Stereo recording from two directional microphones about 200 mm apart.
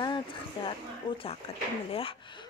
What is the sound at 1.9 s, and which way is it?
Speech, 25° left (ahead or behind).